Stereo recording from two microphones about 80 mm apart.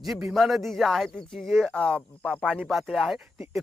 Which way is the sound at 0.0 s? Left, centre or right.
Centre.